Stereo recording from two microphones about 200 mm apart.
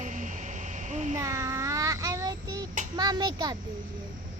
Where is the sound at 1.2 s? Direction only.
15° right (ahead or behind).